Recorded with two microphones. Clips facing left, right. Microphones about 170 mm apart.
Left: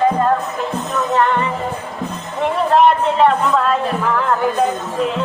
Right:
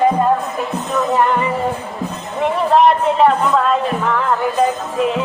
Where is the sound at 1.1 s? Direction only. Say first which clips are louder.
Even; 5° right (ahead or behind).